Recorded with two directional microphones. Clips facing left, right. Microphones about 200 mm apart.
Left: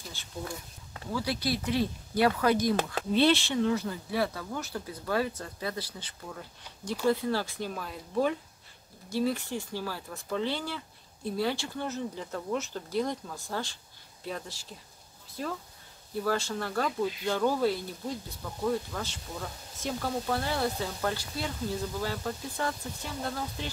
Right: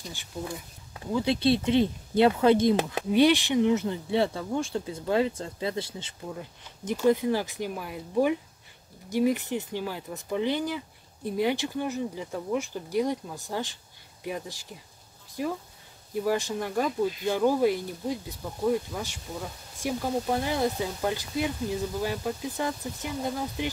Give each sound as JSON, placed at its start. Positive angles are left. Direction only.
{"t": 0.9, "sound": "speech", "side_deg": -20}